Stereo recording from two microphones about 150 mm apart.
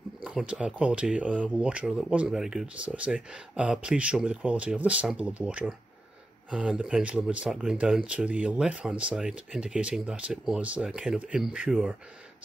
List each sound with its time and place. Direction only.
0.2 s speech: 5° right (ahead or behind)